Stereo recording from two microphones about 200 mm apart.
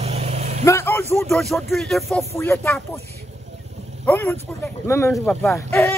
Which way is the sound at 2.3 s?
10° left (ahead or behind).